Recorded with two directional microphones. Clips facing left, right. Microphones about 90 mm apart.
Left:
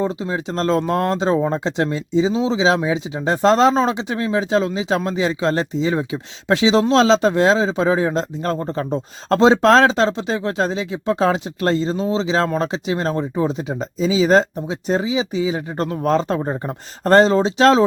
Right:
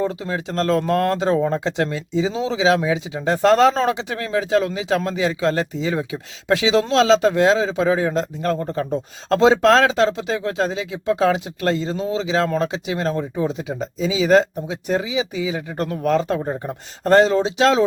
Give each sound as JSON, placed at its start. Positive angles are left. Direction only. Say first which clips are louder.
{"t": 0.0, "sound": "a man's voice", "louder": "left 1 dB", "side_deg": 25}